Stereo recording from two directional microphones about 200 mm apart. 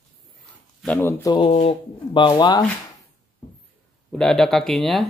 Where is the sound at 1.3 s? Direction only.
30° left (ahead or behind).